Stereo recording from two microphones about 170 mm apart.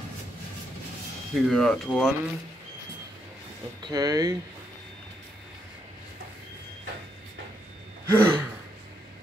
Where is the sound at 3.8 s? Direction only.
20° right (ahead or behind).